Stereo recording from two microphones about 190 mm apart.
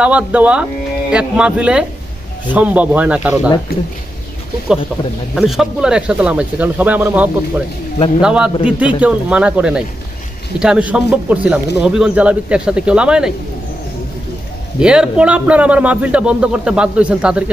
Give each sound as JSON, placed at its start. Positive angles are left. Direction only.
{"t": 0.0, "sound": "speech", "side_deg": -5}
{"t": 3.7, "sound": "speech", "side_deg": 55}
{"t": 5.3, "sound": "speech", "side_deg": 0}
{"t": 14.8, "sound": "speech", "side_deg": -5}